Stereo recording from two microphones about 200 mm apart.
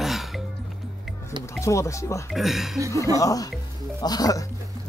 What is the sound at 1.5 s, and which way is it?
Speech, 15° left (ahead or behind).